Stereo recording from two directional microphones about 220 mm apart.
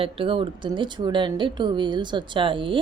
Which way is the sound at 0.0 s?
25° right (ahead or behind).